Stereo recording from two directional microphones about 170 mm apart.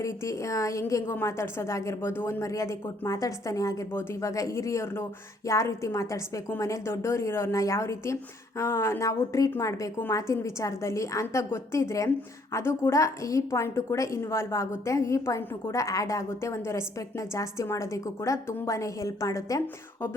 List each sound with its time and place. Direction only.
0.0 s a woman's voice: 20° left (ahead or behind)